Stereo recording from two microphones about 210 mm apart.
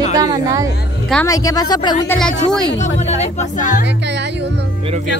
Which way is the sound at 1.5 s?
20° left (ahead or behind).